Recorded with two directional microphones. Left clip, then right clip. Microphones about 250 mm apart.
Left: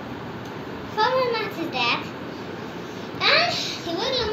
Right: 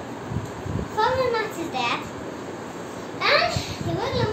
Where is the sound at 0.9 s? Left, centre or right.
Centre.